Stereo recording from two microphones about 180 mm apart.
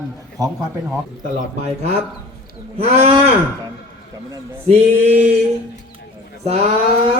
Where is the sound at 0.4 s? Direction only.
20° right (ahead or behind).